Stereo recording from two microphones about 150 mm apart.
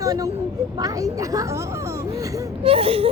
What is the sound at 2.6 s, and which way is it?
Speech, 40° right (ahead or behind).